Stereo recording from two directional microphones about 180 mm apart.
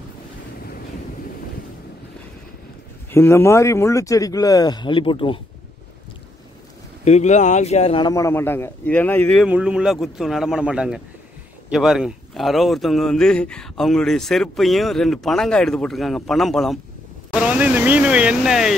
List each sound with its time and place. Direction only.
3.1 s speech: 15° left (ahead or behind)
7.1 s speech: 40° left (ahead or behind)
8.1 s speech: 15° left (ahead or behind)
9.5 s speech: 5° right (ahead or behind)